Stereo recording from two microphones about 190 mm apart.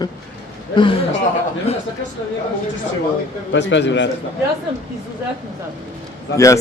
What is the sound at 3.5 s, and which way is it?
Speech, 70° left (ahead or behind).